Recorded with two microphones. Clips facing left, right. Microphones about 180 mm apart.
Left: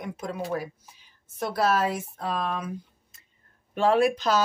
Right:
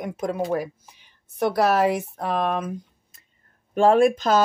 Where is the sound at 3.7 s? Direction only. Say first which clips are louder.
Right 5 dB; 50° right (ahead or behind).